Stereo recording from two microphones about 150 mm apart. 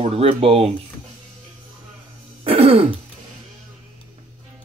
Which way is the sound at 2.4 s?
40° right (ahead or behind).